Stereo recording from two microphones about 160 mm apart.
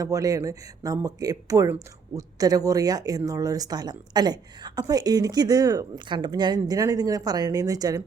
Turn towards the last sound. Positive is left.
turn(degrees=-25)  # may be behind; listen again after turning